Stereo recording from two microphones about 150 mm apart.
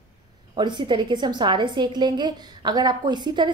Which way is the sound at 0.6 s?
30° right (ahead or behind).